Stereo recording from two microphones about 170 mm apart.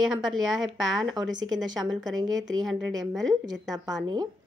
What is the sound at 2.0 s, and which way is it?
Speech, 25° right (ahead or behind).